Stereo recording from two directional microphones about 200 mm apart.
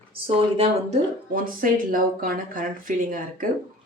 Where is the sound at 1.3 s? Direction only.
45° right (ahead or behind).